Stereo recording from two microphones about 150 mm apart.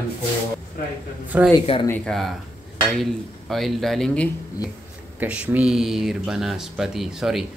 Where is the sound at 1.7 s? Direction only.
40° left (ahead or behind).